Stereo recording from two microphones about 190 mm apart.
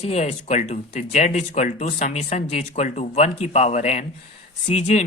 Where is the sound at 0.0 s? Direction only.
35° left (ahead or behind).